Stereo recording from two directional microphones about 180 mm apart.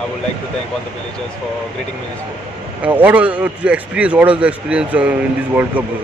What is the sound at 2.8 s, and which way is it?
Speech, 10° right (ahead or behind).